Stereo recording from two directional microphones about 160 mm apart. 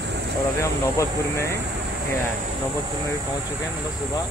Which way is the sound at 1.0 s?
15° left (ahead or behind).